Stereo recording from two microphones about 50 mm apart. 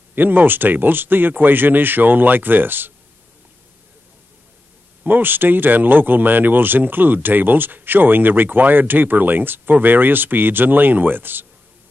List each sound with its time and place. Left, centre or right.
0.1 s speech: right
5.0 s speech: right